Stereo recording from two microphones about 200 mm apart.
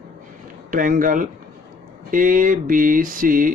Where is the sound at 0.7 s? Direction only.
40° right (ahead or behind).